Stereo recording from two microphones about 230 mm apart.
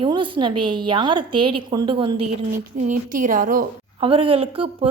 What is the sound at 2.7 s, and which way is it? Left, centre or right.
Speech, right.